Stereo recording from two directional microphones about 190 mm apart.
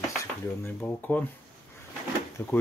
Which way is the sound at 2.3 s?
10° left (ahead or behind).